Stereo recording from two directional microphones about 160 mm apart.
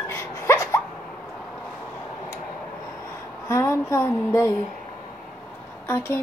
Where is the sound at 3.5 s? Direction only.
20° left (ahead or behind).